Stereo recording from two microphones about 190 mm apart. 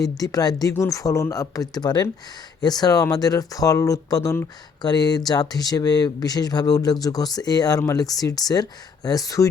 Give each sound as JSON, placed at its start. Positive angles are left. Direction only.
{"t": 0.0, "sound": "speech", "side_deg": 20}